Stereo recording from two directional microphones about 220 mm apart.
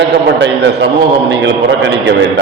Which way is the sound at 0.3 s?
50° right (ahead or behind).